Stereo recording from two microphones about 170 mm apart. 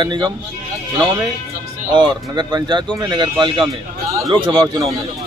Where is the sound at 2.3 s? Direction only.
25° right (ahead or behind).